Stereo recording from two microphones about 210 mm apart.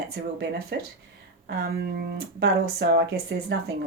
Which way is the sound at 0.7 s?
55° right (ahead or behind).